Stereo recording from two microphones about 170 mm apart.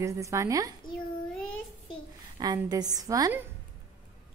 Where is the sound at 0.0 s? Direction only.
15° right (ahead or behind).